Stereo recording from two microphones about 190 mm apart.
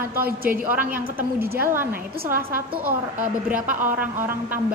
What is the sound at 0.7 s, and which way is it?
A woman's voice, 10° right (ahead or behind).